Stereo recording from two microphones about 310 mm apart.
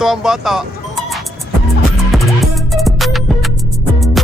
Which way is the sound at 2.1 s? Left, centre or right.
Centre.